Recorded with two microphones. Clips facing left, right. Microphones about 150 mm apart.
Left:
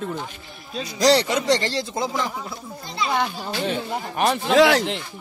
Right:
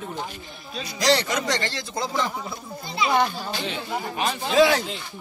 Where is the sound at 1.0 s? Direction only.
35° left (ahead or behind).